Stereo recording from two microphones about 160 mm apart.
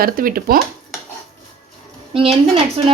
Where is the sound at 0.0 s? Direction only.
65° right (ahead or behind).